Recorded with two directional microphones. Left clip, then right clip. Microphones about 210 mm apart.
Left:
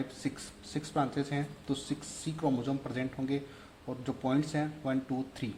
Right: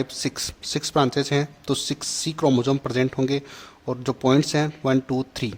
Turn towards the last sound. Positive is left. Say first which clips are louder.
# right 11 dB
turn(degrees=-40)  # may be behind; listen again after turning